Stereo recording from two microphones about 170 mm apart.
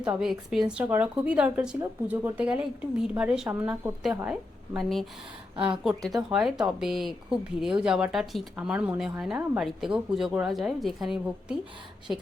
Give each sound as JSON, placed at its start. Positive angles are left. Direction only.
{"t": 0.0, "sound": "speech", "side_deg": -5}
{"t": 5.5, "sound": "a woman's voice", "side_deg": -30}
{"t": 5.8, "sound": "speech", "side_deg": 0}